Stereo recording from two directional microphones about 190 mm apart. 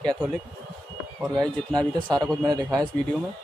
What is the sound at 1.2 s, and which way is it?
Speech, 20° right (ahead or behind).